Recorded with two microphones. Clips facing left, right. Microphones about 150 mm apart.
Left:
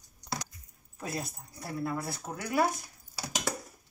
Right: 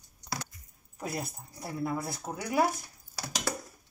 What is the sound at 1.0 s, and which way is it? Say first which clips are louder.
Speech: right 1 dB; 10° right (ahead or behind).